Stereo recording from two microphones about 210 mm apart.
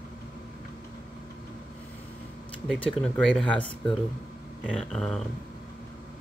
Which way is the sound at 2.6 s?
Centre (ahead or behind).